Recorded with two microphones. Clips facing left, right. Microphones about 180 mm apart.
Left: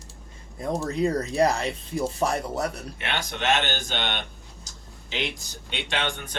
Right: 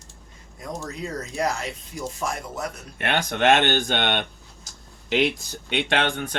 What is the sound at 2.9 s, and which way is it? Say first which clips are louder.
Speech: right 6 dB; 50° right (ahead or behind).